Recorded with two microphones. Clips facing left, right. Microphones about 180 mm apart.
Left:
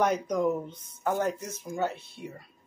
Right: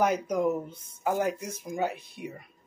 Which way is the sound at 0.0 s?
10° right (ahead or behind).